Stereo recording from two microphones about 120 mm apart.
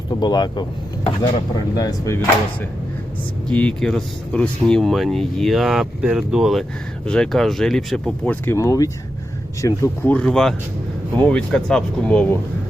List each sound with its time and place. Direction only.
0.1 s speech: 35° left (ahead or behind)
3.5 s speech: 10° left (ahead or behind)
8.4 s speech: 25° left (ahead or behind)
10.1 s speech: 10° left (ahead or behind)